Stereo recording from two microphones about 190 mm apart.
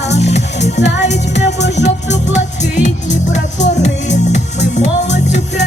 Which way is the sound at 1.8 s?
40° left (ahead or behind).